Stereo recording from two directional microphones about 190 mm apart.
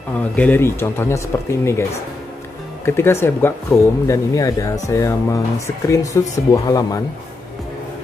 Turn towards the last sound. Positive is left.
turn(degrees=20)  # may be behind; listen again after turning